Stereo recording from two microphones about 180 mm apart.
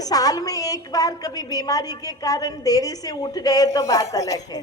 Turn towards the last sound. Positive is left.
turn(degrees=20)  # may be behind; listen again after turning